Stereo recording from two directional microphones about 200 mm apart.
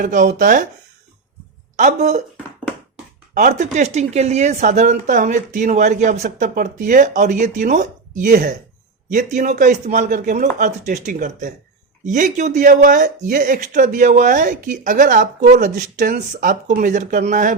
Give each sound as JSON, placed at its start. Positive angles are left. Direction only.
{"t": 0.0, "sound": "speech", "side_deg": -40}
{"t": 1.7, "sound": "speech", "side_deg": -40}
{"t": 3.3, "sound": "speech", "side_deg": -35}